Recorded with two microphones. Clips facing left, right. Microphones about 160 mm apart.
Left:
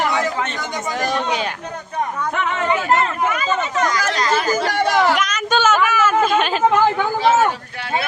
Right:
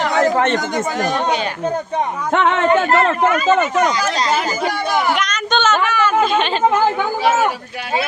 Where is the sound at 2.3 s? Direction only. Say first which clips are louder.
Right 8 dB; 90° right.